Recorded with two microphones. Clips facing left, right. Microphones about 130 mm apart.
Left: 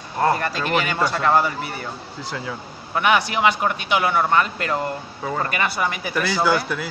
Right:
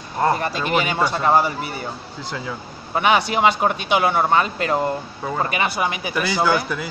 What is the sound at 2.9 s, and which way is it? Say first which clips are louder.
Speech: right 1 dB; 25° right (ahead or behind).